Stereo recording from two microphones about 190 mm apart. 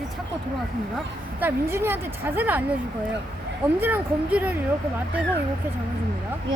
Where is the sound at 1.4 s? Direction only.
10° right (ahead or behind).